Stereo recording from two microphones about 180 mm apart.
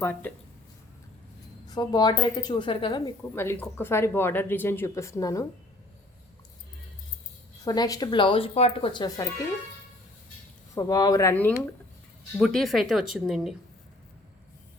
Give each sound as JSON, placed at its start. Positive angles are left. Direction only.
{"t": 0.0, "sound": "speech", "side_deg": 10}
{"t": 1.6, "sound": "speech", "side_deg": 20}
{"t": 3.3, "sound": "speech", "side_deg": 15}
{"t": 7.6, "sound": "speech", "side_deg": 20}
{"t": 10.8, "sound": "speech", "side_deg": 20}
{"t": 12.4, "sound": "speech", "side_deg": 0}